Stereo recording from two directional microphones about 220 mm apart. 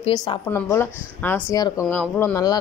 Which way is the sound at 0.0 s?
20° left (ahead or behind).